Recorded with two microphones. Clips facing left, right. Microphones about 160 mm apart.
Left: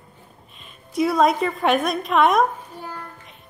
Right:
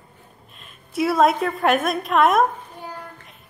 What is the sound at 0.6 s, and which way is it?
A woman's voice, 5° right (ahead or behind).